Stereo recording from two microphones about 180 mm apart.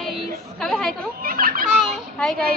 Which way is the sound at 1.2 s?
55° right (ahead or behind).